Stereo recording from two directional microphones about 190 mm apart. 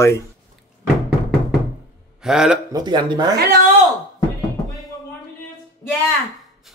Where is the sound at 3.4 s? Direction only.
50° right (ahead or behind).